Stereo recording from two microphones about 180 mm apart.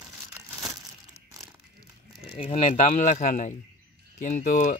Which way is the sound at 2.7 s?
45° left (ahead or behind).